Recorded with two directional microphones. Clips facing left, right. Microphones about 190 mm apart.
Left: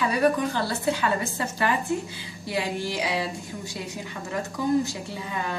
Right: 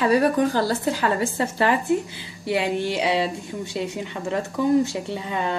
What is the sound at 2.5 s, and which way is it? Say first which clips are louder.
A woman's voice: right 5 dB; 25° right (ahead or behind).